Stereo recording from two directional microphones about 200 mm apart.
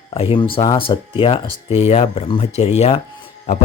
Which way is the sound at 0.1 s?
30° left (ahead or behind).